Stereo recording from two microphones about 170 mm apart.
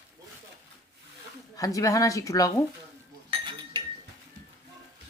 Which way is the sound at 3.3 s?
30° right (ahead or behind).